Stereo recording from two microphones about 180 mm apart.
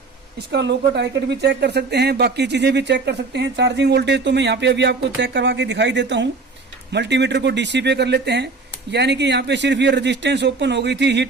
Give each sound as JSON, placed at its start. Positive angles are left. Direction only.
{"t": 0.5, "sound": "speech", "side_deg": -70}